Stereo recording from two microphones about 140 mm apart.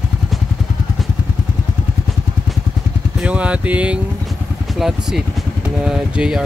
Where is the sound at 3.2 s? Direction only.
10° right (ahead or behind).